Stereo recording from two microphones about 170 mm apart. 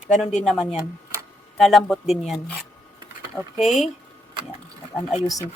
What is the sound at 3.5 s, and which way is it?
Speech, centre (ahead or behind).